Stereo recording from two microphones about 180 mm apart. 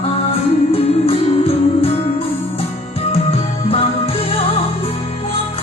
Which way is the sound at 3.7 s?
30° left (ahead or behind).